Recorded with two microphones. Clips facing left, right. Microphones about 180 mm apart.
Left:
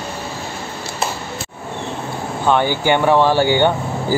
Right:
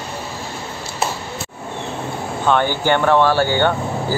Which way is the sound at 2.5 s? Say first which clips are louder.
Left 1 dB; 10° left (ahead or behind).